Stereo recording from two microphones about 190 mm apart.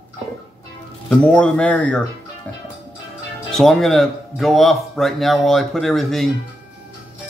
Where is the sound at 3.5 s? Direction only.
Centre (ahead or behind).